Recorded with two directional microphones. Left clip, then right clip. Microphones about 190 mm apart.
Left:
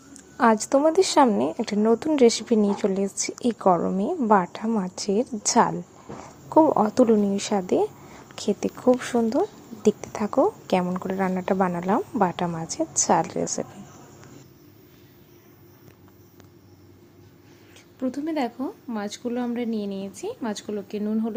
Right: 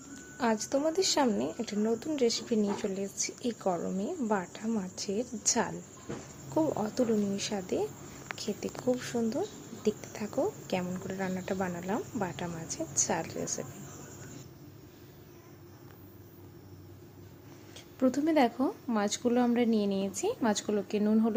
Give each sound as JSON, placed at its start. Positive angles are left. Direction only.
{"t": 0.3, "sound": "speech", "side_deg": 25}
{"t": 18.0, "sound": "a woman's voice", "side_deg": 0}